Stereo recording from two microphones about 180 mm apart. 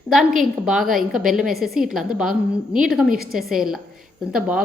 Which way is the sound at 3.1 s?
55° right (ahead or behind).